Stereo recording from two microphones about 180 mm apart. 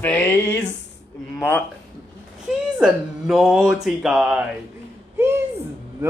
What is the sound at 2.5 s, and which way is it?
Speech, 5° right (ahead or behind).